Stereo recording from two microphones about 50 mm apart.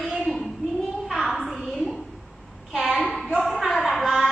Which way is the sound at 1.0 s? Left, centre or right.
Centre.